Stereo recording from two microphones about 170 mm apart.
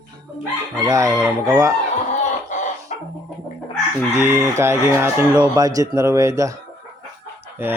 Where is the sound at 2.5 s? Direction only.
45° left (ahead or behind).